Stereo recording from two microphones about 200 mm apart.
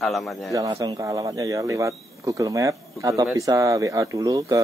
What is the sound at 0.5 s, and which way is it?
Speech, 20° right (ahead or behind).